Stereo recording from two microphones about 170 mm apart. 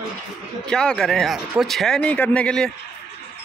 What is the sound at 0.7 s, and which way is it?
Speech, 5° left (ahead or behind).